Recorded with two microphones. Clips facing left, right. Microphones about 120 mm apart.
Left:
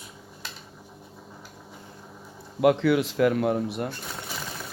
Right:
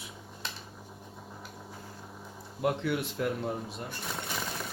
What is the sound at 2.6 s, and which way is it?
Speech, 90° left.